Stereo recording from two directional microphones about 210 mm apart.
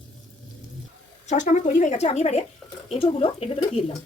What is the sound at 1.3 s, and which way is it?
Speech, 35° left (ahead or behind).